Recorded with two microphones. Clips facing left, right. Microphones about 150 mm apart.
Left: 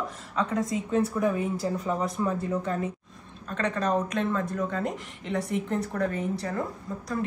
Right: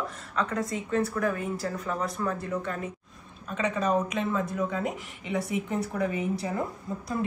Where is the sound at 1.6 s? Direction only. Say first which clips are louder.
Left 3 dB; 20° left (ahead or behind).